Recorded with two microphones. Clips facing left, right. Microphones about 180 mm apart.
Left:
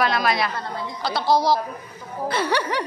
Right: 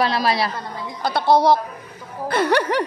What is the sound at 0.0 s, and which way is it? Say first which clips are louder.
Speech: right 2 dB; 30° right (ahead or behind).